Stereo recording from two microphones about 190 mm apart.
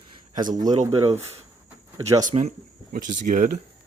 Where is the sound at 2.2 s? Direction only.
40° right (ahead or behind).